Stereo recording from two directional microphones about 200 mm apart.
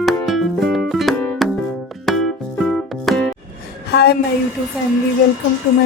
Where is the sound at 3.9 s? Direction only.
55° left (ahead or behind).